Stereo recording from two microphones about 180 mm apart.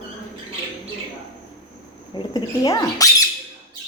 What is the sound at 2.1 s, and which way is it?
Rodents, 25° left (ahead or behind).